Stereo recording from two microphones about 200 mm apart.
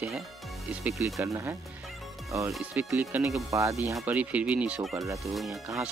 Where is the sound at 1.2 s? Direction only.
15° right (ahead or behind).